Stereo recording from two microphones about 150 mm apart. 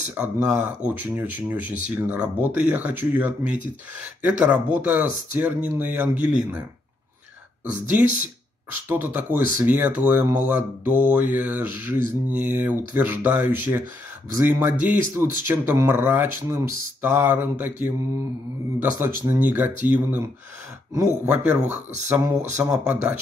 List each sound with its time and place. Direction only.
0.1 s speech: 10° right (ahead or behind)
8.0 s speech: 10° right (ahead or behind)